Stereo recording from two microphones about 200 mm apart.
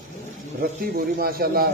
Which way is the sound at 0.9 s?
50° right (ahead or behind).